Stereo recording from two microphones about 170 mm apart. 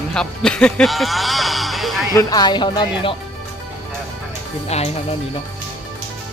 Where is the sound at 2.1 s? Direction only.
25° left (ahead or behind).